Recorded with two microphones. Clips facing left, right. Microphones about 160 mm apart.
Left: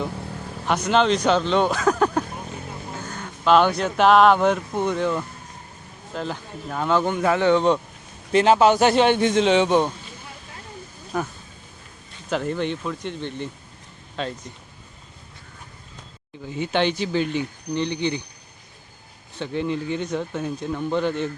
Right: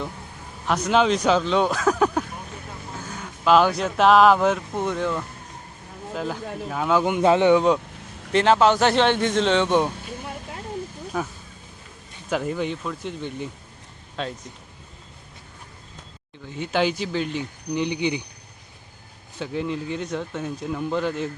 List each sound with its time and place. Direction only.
0.7 s speech: 5° right (ahead or behind)
7.2 s speech: 20° right (ahead or behind)
8.3 s a man's voice: 10° left (ahead or behind)
11.1 s speech: centre (ahead or behind)
12.3 s speech: 5° right (ahead or behind)
16.6 s speech: centre (ahead or behind)
17.8 s speech: 15° right (ahead or behind)
19.4 s speech: centre (ahead or behind)